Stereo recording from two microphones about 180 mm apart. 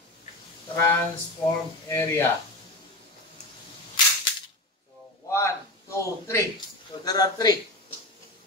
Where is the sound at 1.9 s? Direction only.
15° left (ahead or behind).